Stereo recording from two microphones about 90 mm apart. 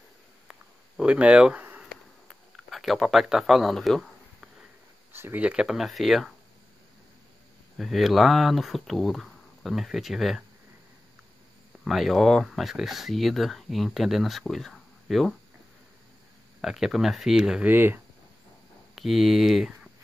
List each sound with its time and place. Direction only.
0.5 s a sound: 10° right (ahead or behind)
2.5 s a sound: centre (ahead or behind)
5.1 s speech: 25° right (ahead or behind)
5.4 s speech: 10° right (ahead or behind)
7.7 s speech: centre (ahead or behind)
11.8 s speech: centre (ahead or behind)
16.6 s speech: 5° right (ahead or behind)
17.6 s speech: 25° right (ahead or behind)
18.9 s speech: centre (ahead or behind)